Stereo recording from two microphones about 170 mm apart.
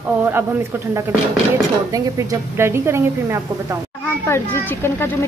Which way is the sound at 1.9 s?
20° right (ahead or behind).